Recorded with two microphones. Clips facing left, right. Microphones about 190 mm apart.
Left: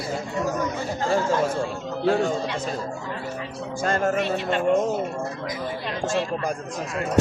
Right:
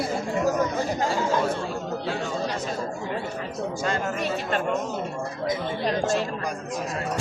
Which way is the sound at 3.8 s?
50° left (ahead or behind).